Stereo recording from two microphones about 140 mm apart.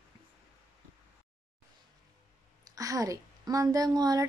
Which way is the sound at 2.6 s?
25° right (ahead or behind).